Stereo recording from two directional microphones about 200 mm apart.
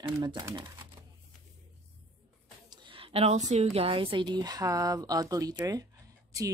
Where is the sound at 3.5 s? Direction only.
30° right (ahead or behind).